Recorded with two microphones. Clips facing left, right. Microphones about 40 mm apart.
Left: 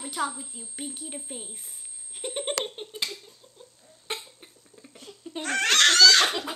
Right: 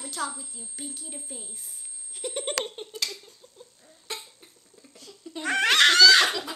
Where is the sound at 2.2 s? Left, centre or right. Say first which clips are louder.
Even; centre.